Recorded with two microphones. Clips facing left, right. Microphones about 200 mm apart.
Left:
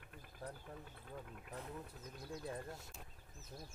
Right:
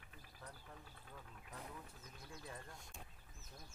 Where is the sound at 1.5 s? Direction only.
35° left (ahead or behind).